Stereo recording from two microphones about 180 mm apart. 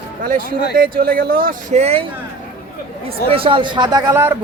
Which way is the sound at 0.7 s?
55° right (ahead or behind).